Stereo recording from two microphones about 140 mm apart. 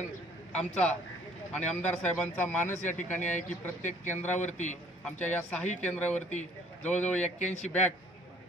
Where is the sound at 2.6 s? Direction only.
60° left (ahead or behind).